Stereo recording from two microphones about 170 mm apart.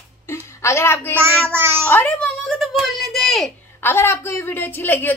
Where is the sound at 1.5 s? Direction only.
10° right (ahead or behind).